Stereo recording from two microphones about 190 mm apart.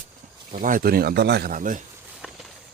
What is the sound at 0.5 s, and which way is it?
Speech, 45° right (ahead or behind).